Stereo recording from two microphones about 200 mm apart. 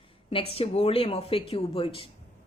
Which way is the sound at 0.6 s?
30° left (ahead or behind).